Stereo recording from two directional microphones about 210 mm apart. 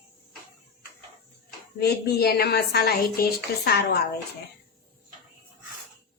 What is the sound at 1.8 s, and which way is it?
A woman's voice, 50° left (ahead or behind).